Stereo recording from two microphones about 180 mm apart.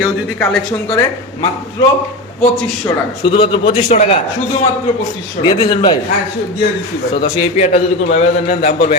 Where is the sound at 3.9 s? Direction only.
35° left (ahead or behind).